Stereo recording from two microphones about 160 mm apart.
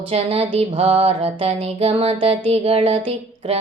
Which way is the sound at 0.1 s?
40° right (ahead or behind).